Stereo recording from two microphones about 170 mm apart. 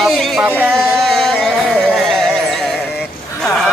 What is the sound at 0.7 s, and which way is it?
Carnatic music, centre (ahead or behind).